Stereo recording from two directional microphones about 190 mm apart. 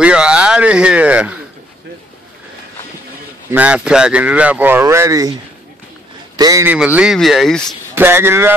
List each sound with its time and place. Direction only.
0.0 s speech: 5° right (ahead or behind)
3.5 s speech: 5° right (ahead or behind)
6.3 s speech: 20° right (ahead or behind)
6.7 s speech: 5° right (ahead or behind)
7.9 s speech: 10° right (ahead or behind)